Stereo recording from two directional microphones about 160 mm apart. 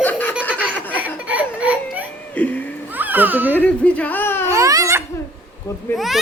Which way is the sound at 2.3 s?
10° left (ahead or behind).